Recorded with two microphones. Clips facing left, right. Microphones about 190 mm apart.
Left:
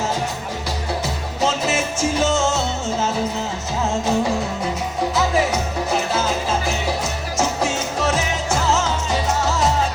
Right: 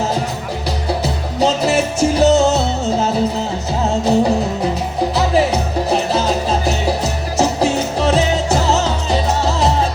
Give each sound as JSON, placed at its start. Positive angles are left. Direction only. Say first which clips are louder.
{"t": 1.0, "sound": "music", "louder": "right 6 dB", "side_deg": -35}
{"t": 4.0, "sound": "music", "louder": "right 8 dB", "side_deg": -35}